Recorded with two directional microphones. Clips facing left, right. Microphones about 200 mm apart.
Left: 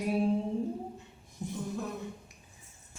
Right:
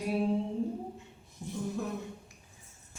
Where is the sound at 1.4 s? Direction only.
15° left (ahead or behind).